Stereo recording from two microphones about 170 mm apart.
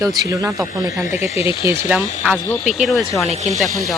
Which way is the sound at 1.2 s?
40° left (ahead or behind).